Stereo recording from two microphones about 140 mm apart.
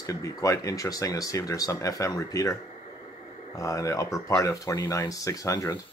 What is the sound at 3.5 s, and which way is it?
Speech, 25° left (ahead or behind).